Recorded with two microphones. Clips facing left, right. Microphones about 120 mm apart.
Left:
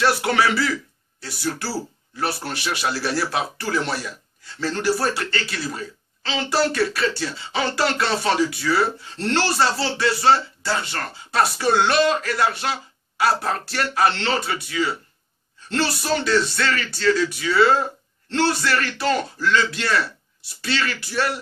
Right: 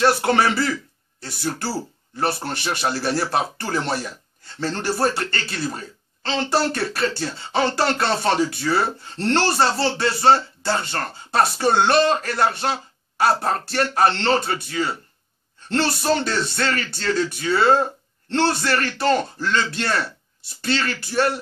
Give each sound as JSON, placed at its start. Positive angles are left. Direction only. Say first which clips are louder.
{"t": 0.2, "sound": "speech", "louder": "right 1 dB", "side_deg": -40}
{"t": 9.3, "sound": "speech", "louder": "right 2 dB", "side_deg": -50}